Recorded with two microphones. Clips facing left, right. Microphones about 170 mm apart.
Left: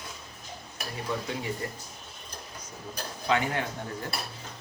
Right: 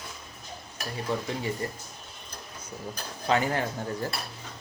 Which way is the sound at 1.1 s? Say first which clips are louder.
Right 2 dB; 30° right (ahead or behind).